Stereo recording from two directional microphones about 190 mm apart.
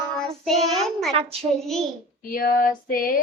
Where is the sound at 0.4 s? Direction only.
Centre (ahead or behind).